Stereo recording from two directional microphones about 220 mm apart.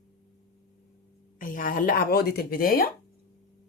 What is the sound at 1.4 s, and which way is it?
Speech, 40° left (ahead or behind).